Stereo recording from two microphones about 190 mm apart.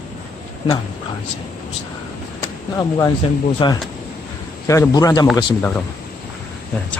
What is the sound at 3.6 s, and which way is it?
Speech, 25° left (ahead or behind).